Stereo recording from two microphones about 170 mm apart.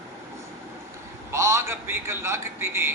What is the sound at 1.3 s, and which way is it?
A man's voice, 15° right (ahead or behind).